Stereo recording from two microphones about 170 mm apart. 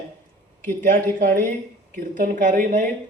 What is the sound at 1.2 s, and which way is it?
A man's voice, 55° right (ahead or behind).